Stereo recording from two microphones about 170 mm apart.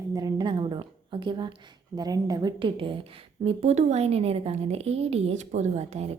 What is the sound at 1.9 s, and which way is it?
A woman's voice, 20° right (ahead or behind).